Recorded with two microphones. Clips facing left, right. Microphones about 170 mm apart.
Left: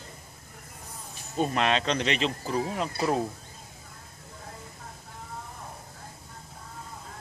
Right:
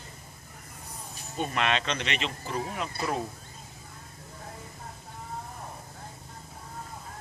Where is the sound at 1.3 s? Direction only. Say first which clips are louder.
Left 3 dB; 35° left (ahead or behind).